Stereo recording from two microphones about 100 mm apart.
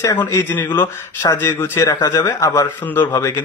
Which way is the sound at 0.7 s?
25° left (ahead or behind).